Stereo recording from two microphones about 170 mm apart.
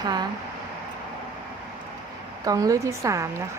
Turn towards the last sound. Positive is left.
turn(degrees=-20)  # may be behind; listen again after turning